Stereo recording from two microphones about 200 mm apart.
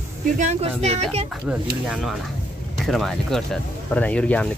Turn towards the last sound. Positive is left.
turn(degrees=5)  # may be behind; listen again after turning